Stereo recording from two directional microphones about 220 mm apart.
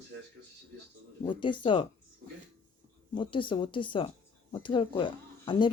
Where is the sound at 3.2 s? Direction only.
20° left (ahead or behind).